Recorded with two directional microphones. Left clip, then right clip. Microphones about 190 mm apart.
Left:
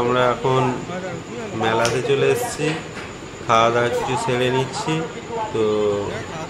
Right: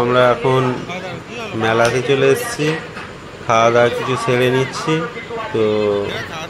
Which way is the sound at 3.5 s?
20° right (ahead or behind).